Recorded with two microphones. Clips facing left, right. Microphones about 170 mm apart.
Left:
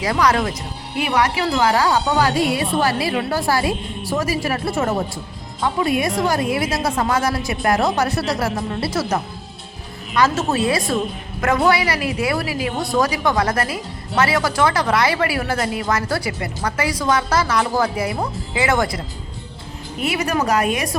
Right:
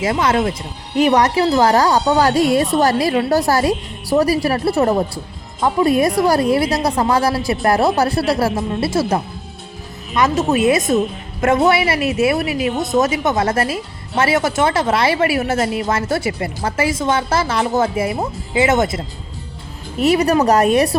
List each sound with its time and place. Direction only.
0.0 s speech: 25° right (ahead or behind)
0.9 s a woman's voice: 40° right (ahead or behind); by 19.0 s 25° right (ahead or behind)
20.0 s a woman's voice: 40° right (ahead or behind)